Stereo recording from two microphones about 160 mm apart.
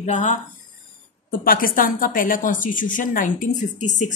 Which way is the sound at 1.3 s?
60° left (ahead or behind).